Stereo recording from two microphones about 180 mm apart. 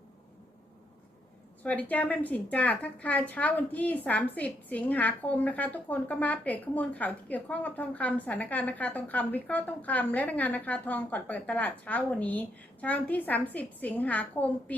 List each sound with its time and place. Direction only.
1.6 s speech: 10° left (ahead or behind)